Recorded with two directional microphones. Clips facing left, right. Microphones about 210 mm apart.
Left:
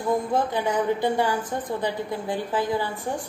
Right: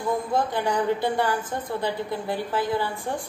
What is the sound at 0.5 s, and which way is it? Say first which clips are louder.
A woman's voice: even; 15° left (ahead or behind).